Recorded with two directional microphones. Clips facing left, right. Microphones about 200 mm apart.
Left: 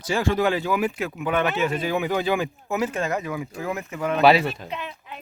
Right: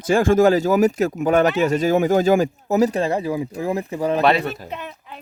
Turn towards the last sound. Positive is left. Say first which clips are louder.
# right 1 dB
turn(degrees=-45)  # may be behind; listen again after turning